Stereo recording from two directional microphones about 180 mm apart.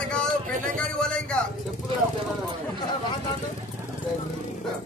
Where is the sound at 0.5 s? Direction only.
45° right (ahead or behind).